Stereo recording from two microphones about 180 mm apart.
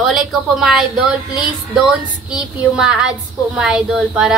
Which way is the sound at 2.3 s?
5° right (ahead or behind).